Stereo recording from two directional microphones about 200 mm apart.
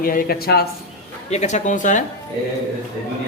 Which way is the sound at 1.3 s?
35° left (ahead or behind).